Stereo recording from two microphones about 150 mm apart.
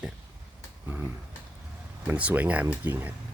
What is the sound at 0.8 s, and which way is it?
Speech, 15° right (ahead or behind).